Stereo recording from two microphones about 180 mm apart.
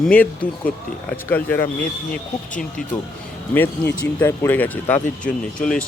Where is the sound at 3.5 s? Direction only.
10° left (ahead or behind).